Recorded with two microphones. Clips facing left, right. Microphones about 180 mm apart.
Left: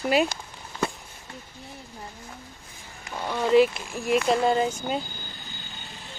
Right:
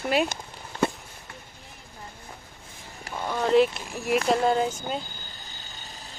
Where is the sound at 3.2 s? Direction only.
Centre (ahead or behind).